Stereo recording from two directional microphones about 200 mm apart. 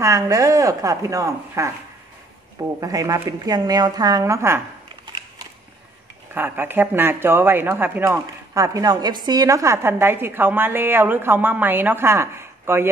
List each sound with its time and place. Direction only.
0.0 s speech: 15° right (ahead or behind)
2.8 s a woman's voice: 15° right (ahead or behind)
6.3 s speech: 10° right (ahead or behind)